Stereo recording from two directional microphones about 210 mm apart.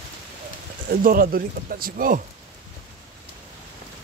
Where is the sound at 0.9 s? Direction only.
45° right (ahead or behind).